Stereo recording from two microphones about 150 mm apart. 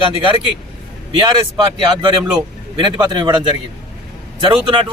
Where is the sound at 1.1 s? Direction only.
30° right (ahead or behind).